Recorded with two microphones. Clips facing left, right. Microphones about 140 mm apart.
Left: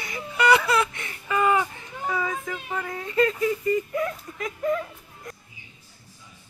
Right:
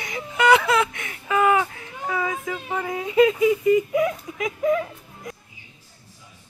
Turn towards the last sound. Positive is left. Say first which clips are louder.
# right 4 dB
turn(degrees=-5)  # may be behind; listen again after turning